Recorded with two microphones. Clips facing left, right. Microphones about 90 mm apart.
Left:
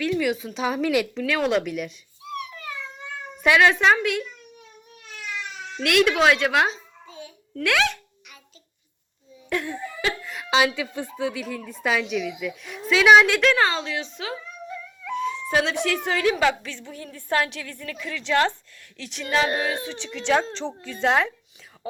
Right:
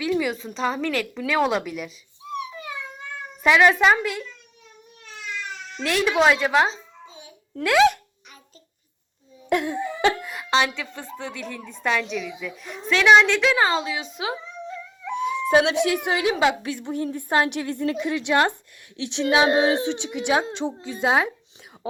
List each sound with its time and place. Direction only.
0.2 s a woman's voice: centre (ahead or behind)
1.1 s a woman's voice: 5° right (ahead or behind)
2.2 s a sound: 20° right (ahead or behind)
3.4 s a woman's voice: 5° right (ahead or behind)
6.1 s a woman's voice: 5° right (ahead or behind)
6.7 s a sound: 20° right (ahead or behind)
7.6 s a woman's voice: 10° right (ahead or behind)
9.5 s speech: 20° right (ahead or behind)
10.5 s a woman's voice: 10° left (ahead or behind)
13.5 s a woman's voice: 10° right (ahead or behind)
14.2 s wail: 20° right (ahead or behind)
15.4 s a woman's voice: 20° right (ahead or behind)